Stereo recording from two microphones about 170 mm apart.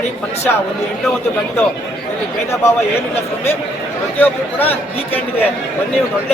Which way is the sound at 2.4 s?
15° left (ahead or behind).